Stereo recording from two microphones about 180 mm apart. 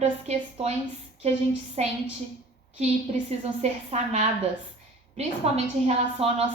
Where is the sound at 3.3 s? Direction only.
35° right (ahead or behind).